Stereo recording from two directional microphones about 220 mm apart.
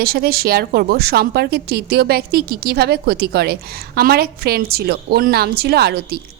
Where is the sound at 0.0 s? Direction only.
45° right (ahead or behind).